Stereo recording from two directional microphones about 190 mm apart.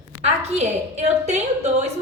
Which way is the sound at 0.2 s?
35° right (ahead or behind).